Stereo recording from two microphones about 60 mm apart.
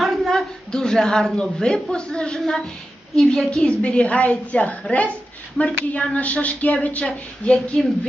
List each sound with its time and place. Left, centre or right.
0.0 s a woman's voice: centre
3.6 s a woman's voice: left
7.0 s a woman's voice: centre